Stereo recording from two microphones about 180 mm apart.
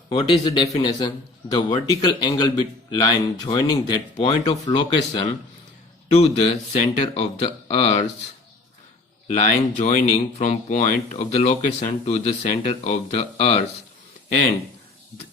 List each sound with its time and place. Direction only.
0.1 s a man's voice: 25° left (ahead or behind)
6.1 s speech: 35° left (ahead or behind)
9.7 s speech: 40° left (ahead or behind)